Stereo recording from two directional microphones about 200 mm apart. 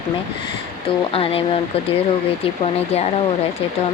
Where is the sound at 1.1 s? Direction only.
30° left (ahead or behind).